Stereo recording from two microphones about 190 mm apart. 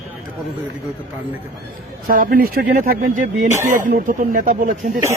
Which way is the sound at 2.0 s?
50° right (ahead or behind).